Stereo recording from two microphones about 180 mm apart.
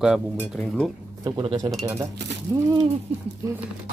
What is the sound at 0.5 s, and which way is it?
Speech, centre (ahead or behind).